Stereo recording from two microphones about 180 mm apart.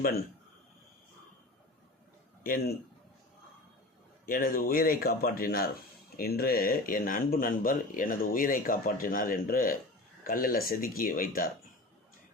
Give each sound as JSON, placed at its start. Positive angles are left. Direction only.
{"t": 2.4, "sound": "a man's voice", "side_deg": 55}
{"t": 4.3, "sound": "speech", "side_deg": 50}